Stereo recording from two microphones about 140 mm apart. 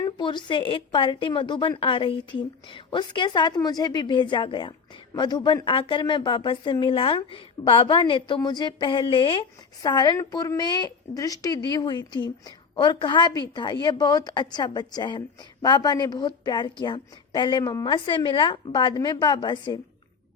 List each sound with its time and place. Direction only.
0.2 s a woman's voice: 35° left (ahead or behind)